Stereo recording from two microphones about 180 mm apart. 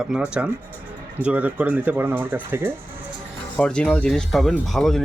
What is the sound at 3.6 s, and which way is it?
Speech, 5° left (ahead or behind).